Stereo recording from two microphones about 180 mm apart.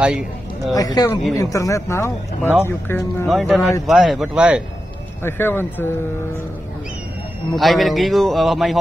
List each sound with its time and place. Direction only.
0.7 s speech: 20° left (ahead or behind)
3.3 s a man's voice: centre (ahead or behind)
5.2 s speech: 10° left (ahead or behind)
7.5 s a man's voice: centre (ahead or behind)